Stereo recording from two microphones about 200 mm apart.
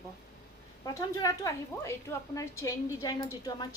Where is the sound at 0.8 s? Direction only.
15° left (ahead or behind).